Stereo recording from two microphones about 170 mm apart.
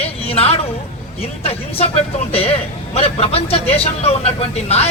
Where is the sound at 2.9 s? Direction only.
35° left (ahead or behind).